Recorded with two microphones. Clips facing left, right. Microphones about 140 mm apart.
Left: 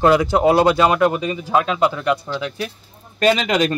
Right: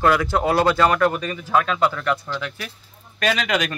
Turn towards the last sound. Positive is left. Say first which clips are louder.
# left 5 dB
turn(degrees=30)  # may be behind; listen again after turning